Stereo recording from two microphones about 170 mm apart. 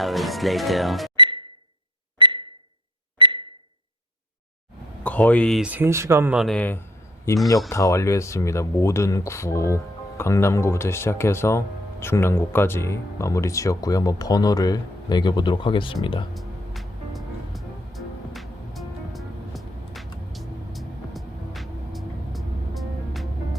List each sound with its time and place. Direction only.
0.0 s speech: centre (ahead or behind)
1.1 s music: 30° right (ahead or behind)
2.1 s a sound: 30° right (ahead or behind)
5.0 s speech: 10° left (ahead or behind)
5.6 s speech: 10° right (ahead or behind); by 16.2 s 30° left (ahead or behind)
16.3 s music: centre (ahead or behind)